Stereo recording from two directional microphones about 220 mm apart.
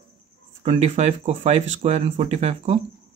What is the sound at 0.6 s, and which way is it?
Speech, 30° right (ahead or behind).